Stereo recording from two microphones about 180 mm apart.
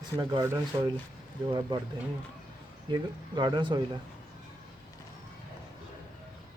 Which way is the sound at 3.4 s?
25° right (ahead or behind).